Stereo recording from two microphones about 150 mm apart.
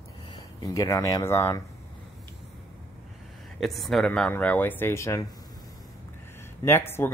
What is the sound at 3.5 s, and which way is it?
Speech, centre (ahead or behind).